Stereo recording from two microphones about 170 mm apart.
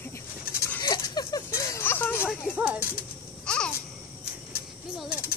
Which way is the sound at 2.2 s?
5° right (ahead or behind).